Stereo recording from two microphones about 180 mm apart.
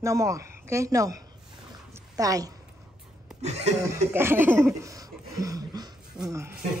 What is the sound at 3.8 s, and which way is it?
Speech, 15° right (ahead or behind).